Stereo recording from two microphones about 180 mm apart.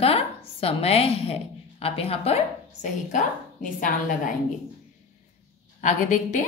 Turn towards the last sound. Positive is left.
turn(degrees=45)  # may be behind; listen again after turning